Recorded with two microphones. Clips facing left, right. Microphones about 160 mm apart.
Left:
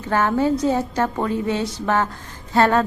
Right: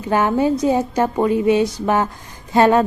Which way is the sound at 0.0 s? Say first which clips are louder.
Right 2 dB; 15° right (ahead or behind).